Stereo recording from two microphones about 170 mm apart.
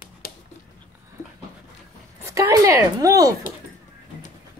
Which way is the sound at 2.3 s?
20° right (ahead or behind).